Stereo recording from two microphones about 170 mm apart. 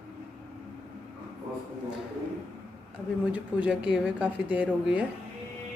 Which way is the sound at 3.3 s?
5° right (ahead or behind).